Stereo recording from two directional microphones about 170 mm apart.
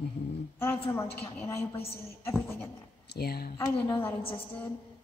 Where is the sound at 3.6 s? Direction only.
25° left (ahead or behind).